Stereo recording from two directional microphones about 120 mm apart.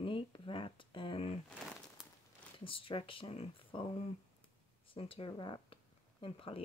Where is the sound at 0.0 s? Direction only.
45° left (ahead or behind).